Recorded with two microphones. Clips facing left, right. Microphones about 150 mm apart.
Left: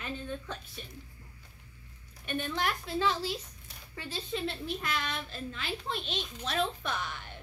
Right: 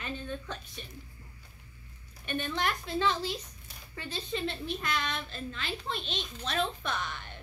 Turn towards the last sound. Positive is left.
turn(degrees=10)  # may be behind; listen again after turning